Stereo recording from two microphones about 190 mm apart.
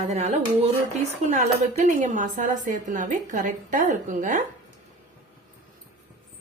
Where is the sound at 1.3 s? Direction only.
40° right (ahead or behind).